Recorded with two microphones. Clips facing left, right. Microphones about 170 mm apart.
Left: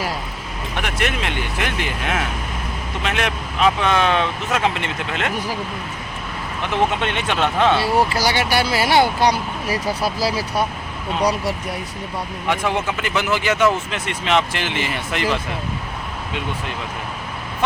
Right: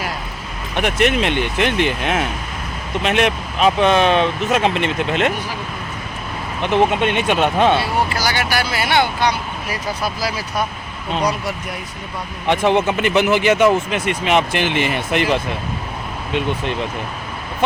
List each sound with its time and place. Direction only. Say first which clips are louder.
0.8 s speech: right 7 dB; 20° right (ahead or behind)
6.6 s speech: right 4 dB; 15° right (ahead or behind)
8.1 s speech: left 1 dB; 30° left (ahead or behind)
12.5 s speech: right 6 dB; 25° right (ahead or behind)